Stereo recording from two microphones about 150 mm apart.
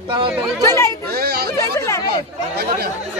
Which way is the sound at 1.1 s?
90° right.